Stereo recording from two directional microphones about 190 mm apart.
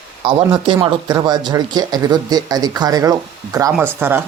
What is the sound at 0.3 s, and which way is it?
Speech, 25° right (ahead or behind).